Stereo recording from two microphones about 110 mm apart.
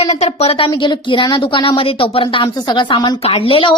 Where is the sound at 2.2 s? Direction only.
40° left (ahead or behind).